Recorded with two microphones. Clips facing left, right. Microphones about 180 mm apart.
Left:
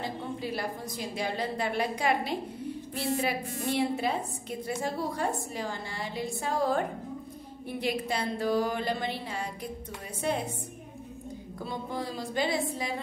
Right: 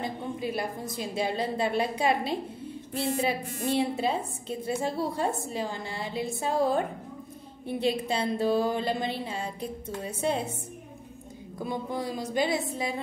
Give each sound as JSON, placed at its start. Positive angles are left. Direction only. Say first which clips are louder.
{"t": 0.0, "sound": "a woman's voice", "louder": "right 2 dB", "side_deg": -20}
{"t": 11.6, "sound": "a woman's voice", "louder": "right 3 dB", "side_deg": -20}